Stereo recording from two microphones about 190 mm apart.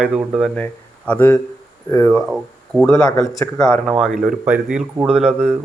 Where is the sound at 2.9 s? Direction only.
15° left (ahead or behind).